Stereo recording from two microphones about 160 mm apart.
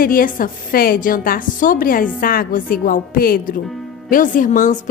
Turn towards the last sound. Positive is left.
turn(degrees=50)  # may be behind; listen again after turning